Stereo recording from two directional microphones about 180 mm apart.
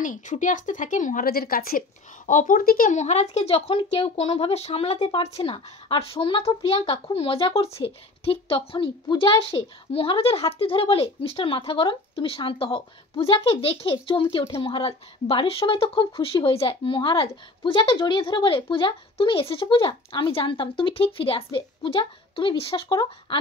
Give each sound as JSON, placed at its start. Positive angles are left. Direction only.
{"t": 0.0, "sound": "speech", "side_deg": 45}